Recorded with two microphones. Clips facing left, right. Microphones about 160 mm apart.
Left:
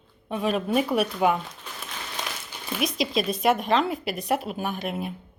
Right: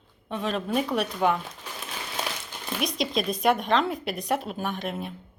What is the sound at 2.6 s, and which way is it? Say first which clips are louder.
A woman's voice: left 2 dB; 5° left (ahead or behind).